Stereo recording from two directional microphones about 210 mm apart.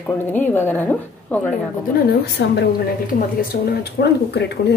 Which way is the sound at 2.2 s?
50° left (ahead or behind).